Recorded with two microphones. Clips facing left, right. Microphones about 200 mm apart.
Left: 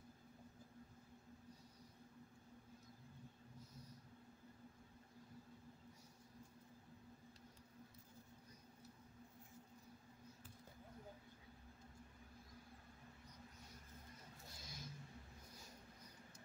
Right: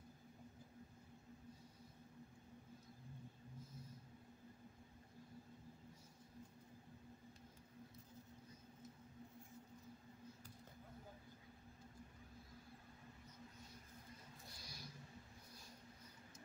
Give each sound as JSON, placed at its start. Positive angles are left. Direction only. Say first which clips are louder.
{"t": 14.6, "sound": "vehicle", "louder": "left 2 dB", "side_deg": 20}